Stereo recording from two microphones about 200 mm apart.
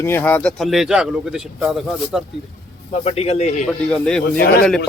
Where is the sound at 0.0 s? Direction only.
10° left (ahead or behind).